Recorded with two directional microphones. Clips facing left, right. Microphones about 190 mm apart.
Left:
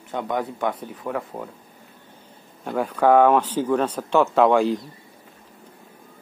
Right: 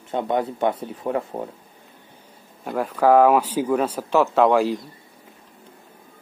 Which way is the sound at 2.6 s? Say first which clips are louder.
Even; centre (ahead or behind).